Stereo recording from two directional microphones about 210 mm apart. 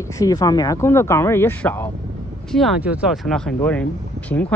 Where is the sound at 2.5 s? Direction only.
Centre (ahead or behind).